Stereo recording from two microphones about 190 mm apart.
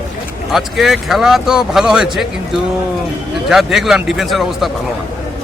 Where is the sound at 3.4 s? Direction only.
Centre (ahead or behind).